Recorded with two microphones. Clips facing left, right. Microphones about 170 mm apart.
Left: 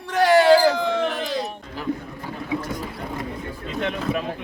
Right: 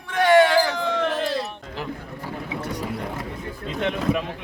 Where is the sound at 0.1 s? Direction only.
35° left (ahead or behind).